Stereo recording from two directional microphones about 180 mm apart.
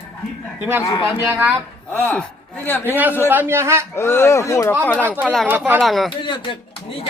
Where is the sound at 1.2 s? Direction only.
10° right (ahead or behind).